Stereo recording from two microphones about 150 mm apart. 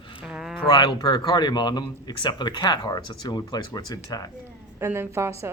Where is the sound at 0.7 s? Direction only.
30° left (ahead or behind).